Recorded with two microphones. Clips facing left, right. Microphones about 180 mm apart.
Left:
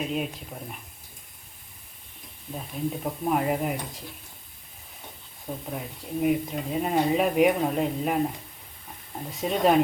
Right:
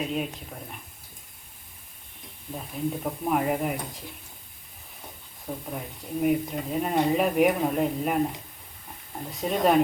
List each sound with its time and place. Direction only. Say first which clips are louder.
0.0 s speech: even; centre (ahead or behind)
2.6 s speech: even; centre (ahead or behind)
5.5 s speech: even; centre (ahead or behind)
9.4 s speech: left 1 dB; centre (ahead or behind)